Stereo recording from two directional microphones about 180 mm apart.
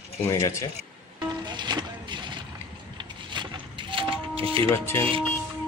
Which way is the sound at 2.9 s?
25° right (ahead or behind).